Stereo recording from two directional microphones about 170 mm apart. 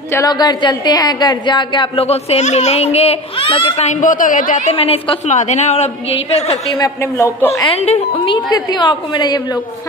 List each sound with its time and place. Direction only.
0.1 s a woman's voice: 20° left (ahead or behind); by 6.5 s 40° left (ahead or behind)
6.5 s a woman's voice: 20° left (ahead or behind)
7.7 s a woman's voice: 35° left (ahead or behind)
8.5 s a woman's voice: 25° left (ahead or behind)